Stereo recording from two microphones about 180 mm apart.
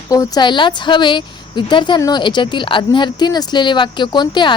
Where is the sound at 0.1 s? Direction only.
20° left (ahead or behind).